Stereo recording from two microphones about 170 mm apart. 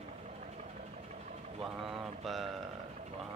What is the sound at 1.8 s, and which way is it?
Speech, centre (ahead or behind).